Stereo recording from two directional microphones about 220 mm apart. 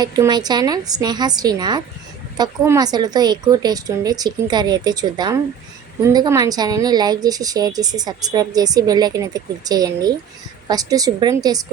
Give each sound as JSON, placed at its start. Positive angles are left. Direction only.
{"t": 0.0, "sound": "a woman's voice", "side_deg": -20}